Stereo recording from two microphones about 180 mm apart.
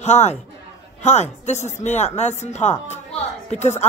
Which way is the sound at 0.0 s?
40° left (ahead or behind).